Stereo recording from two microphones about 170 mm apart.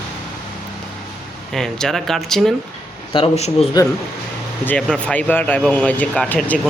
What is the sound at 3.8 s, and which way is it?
Speech, 25° left (ahead or behind).